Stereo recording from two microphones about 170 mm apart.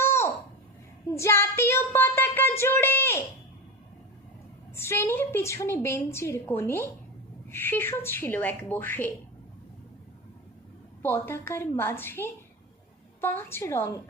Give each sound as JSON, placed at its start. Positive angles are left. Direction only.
{"t": 0.0, "sound": "a sound", "side_deg": 15}
{"t": 1.0, "sound": "speech", "side_deg": 15}
{"t": 4.7, "sound": "a woman's voice", "side_deg": 15}
{"t": 11.0, "sound": "a woman's voice", "side_deg": 15}